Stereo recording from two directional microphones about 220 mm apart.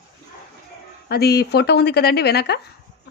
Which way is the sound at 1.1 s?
45° left (ahead or behind).